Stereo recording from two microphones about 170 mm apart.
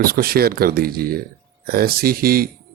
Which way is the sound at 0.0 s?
60° right (ahead or behind).